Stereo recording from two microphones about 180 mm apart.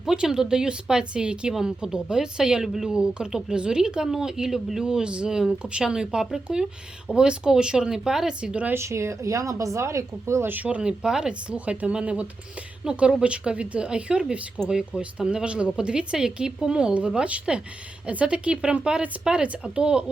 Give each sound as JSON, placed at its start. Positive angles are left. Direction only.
{"t": 0.0, "sound": "speech", "side_deg": -5}